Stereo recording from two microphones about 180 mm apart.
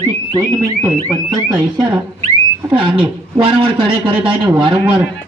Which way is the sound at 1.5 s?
25° right (ahead or behind).